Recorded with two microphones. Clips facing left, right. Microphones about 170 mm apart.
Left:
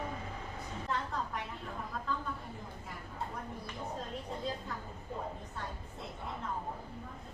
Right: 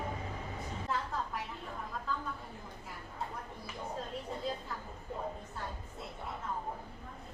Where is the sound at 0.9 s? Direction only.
5° right (ahead or behind).